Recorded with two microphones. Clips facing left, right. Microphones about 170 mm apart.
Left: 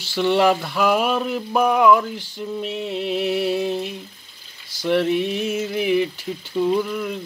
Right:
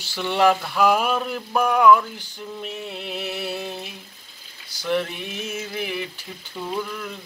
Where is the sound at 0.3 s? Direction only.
5° left (ahead or behind).